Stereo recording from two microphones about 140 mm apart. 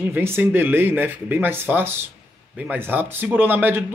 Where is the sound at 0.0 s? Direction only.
15° right (ahead or behind).